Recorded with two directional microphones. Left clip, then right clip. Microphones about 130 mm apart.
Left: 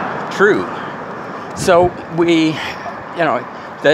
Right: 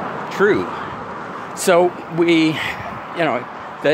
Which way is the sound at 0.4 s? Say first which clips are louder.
Left 3 dB; 35° right (ahead or behind).